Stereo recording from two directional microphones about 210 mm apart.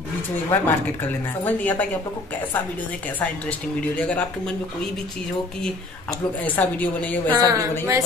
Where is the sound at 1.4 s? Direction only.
10° left (ahead or behind).